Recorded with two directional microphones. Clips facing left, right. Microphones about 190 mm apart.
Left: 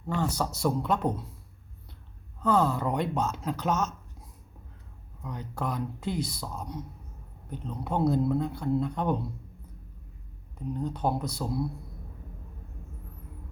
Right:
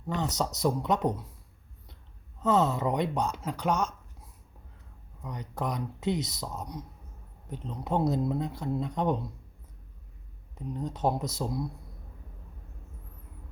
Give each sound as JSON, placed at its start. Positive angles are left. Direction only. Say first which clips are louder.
{"t": 0.1, "sound": "speech", "louder": "left 1 dB", "side_deg": -20}
{"t": 2.4, "sound": "speech", "louder": "even", "side_deg": -20}
{"t": 5.2, "sound": "speech", "louder": "even", "side_deg": -15}
{"t": 10.8, "sound": "speech", "louder": "right 1 dB", "side_deg": -20}